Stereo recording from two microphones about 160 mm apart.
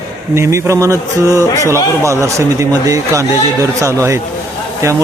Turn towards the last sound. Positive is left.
turn(degrees=-20)  # may be behind; listen again after turning